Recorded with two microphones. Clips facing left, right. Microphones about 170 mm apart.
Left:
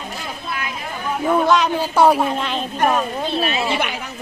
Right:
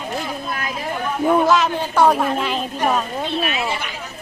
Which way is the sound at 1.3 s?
5° right (ahead or behind).